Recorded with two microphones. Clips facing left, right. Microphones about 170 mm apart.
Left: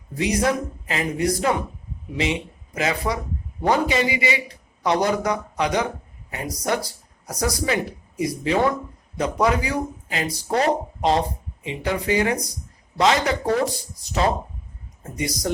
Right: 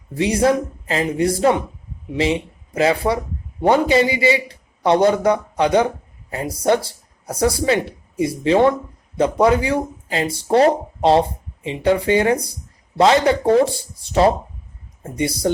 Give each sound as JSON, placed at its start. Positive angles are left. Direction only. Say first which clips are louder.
{"t": 0.1, "sound": "a man's voice", "louder": "right 5 dB", "side_deg": -30}